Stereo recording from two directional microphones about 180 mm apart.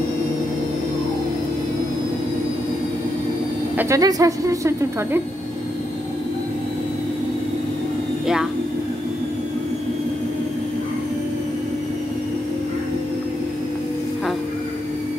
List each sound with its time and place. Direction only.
3.7 s speech: 15° right (ahead or behind)